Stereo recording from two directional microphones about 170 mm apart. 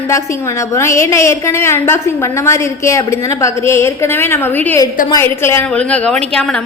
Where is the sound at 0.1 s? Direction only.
15° left (ahead or behind).